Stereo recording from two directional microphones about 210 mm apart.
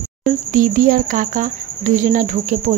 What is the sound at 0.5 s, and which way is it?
Speech, 40° right (ahead or behind).